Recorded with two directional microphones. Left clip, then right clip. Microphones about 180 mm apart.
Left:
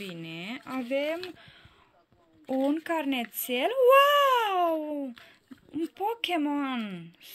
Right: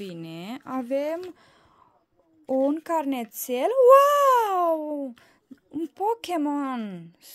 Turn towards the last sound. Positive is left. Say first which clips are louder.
# right 1 dB
turn(degrees=-40)  # may be behind; listen again after turning